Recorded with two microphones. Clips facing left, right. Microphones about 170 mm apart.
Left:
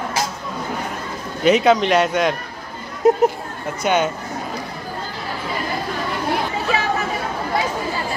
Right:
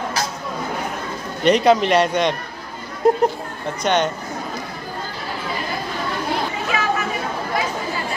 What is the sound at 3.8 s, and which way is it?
Speech, 5° left (ahead or behind).